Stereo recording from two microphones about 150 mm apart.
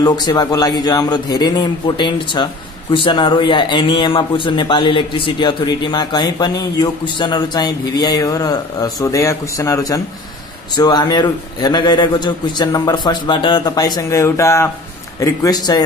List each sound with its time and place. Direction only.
0.0 s a man's voice: 30° left (ahead or behind)